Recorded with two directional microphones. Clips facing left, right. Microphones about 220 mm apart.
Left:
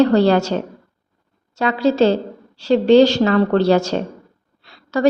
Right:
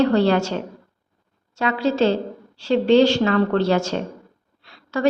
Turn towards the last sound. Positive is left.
turn(degrees=40)  # may be behind; listen again after turning